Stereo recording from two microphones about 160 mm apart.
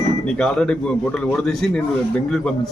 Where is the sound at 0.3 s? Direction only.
5° left (ahead or behind).